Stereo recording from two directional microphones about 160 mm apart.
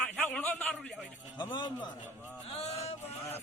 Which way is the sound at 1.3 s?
30° left (ahead or behind).